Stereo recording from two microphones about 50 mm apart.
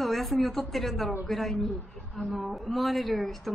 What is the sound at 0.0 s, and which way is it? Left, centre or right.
A woman's voice, centre.